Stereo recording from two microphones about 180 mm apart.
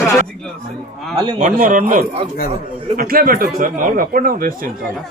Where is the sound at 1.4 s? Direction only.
45° right (ahead or behind).